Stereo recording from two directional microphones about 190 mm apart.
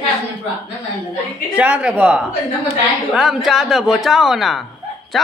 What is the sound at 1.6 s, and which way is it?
Speech, 5° right (ahead or behind).